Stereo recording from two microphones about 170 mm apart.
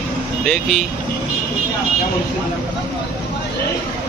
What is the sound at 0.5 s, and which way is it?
Speech, centre (ahead or behind).